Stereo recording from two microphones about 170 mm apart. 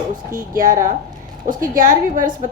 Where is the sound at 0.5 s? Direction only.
50° right (ahead or behind).